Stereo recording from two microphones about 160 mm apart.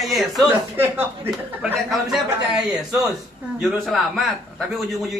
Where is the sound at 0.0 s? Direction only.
Centre (ahead or behind).